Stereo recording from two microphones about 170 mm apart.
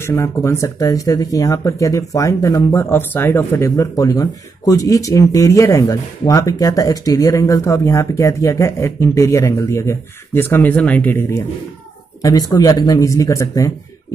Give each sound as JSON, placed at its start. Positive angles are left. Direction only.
{"t": 0.0, "sound": "speech", "side_deg": 15}